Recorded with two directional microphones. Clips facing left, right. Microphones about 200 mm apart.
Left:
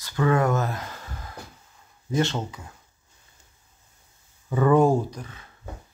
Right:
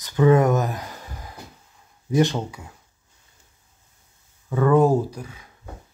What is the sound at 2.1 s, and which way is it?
Speech, 15° right (ahead or behind).